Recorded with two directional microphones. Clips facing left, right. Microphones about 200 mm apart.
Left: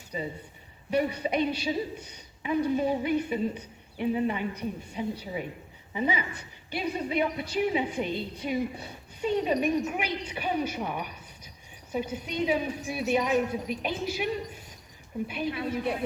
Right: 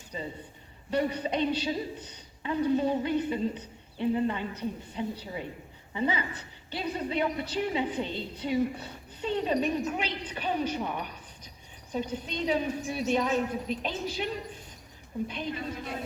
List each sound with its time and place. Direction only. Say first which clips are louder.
0.1 s a woman's voice: left 3 dB; 10° left (ahead or behind)
15.4 s speech: left 5 dB; 65° left (ahead or behind)